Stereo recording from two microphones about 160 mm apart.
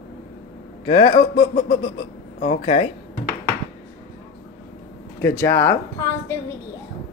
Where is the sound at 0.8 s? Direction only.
35° left (ahead or behind).